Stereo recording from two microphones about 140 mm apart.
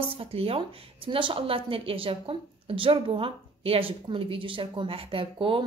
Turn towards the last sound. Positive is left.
turn(degrees=-40)  # may be behind; listen again after turning